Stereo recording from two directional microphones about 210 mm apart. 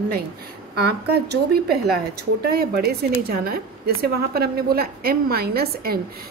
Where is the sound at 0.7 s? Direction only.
50° right (ahead or behind).